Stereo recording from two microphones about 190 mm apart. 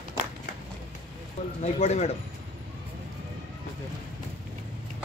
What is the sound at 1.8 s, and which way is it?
Speech, 35° left (ahead or behind).